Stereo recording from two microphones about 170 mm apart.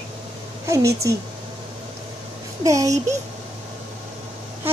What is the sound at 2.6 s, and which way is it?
Speech, 20° right (ahead or behind).